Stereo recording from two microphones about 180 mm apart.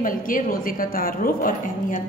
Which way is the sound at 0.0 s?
50° left (ahead or behind).